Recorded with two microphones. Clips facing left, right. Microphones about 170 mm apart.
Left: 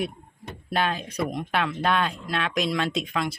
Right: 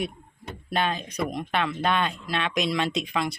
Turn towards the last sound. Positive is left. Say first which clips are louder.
# even
turn(degrees=0)  # may be behind; listen again after turning